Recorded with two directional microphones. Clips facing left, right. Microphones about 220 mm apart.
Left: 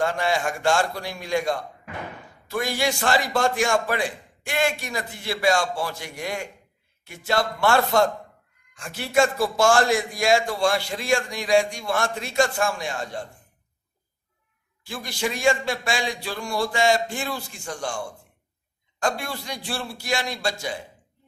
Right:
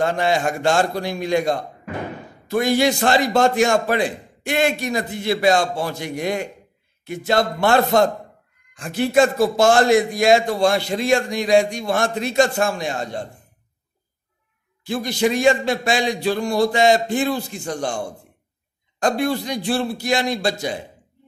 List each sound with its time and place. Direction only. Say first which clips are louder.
0.0 s a man's voice: right 4 dB; 20° right (ahead or behind)
14.8 s a man's voice: right 9 dB; 20° right (ahead or behind)